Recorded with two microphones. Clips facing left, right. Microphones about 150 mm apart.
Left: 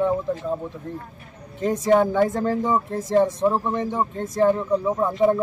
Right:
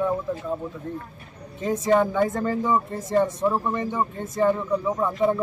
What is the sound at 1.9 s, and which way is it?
A man's voice, 5° left (ahead or behind).